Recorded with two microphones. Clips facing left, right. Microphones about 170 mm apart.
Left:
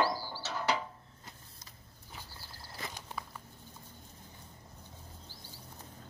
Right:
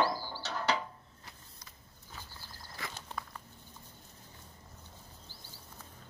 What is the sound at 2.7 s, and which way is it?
Walk, 20° left (ahead or behind).